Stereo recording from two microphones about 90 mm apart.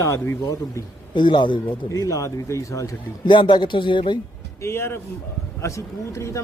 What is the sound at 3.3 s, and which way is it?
Speech, 65° left (ahead or behind).